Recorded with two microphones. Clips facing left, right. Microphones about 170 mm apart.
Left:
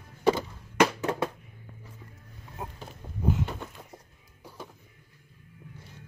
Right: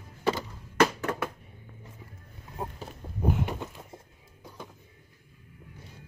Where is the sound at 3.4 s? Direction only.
15° right (ahead or behind).